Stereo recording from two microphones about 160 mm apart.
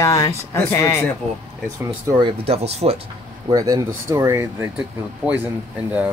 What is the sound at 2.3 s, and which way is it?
Speech, 40° right (ahead or behind).